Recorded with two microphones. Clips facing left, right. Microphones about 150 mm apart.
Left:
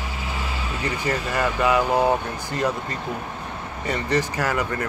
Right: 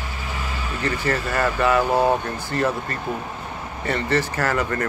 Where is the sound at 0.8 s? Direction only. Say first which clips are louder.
Right 2 dB; 15° left (ahead or behind).